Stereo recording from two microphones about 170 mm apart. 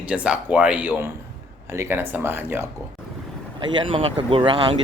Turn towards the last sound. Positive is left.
turn(degrees=-30)  # may be behind; listen again after turning